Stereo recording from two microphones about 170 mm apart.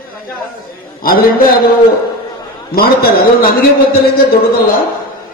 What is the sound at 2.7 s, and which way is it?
A man's voice, 60° left (ahead or behind).